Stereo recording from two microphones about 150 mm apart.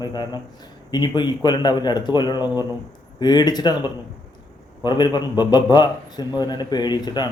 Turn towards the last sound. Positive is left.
turn(degrees=25)  # may be behind; listen again after turning